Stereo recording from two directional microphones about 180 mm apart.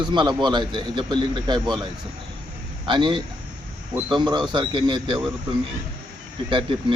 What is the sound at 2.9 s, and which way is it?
A man's voice, 25° right (ahead or behind).